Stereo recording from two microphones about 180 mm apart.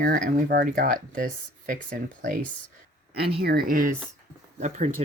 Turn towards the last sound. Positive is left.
turn(degrees=-40)  # may be behind; listen again after turning